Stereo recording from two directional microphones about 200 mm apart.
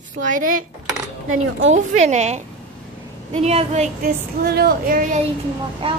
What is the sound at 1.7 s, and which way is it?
Speech, 35° right (ahead or behind).